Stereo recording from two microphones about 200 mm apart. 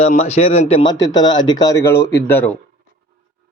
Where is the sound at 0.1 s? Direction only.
30° left (ahead or behind); by 2.0 s 15° left (ahead or behind).